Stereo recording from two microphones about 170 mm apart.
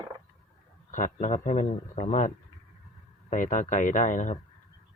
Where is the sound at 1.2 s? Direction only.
45° left (ahead or behind).